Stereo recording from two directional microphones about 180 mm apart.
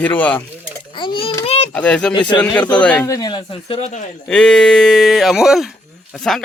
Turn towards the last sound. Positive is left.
turn(degrees=0)  # may be behind; listen again after turning